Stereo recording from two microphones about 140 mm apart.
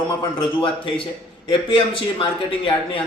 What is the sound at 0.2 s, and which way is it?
A man's voice, 35° left (ahead or behind).